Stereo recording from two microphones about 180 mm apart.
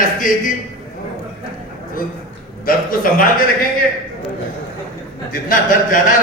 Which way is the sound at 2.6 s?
50° left (ahead or behind).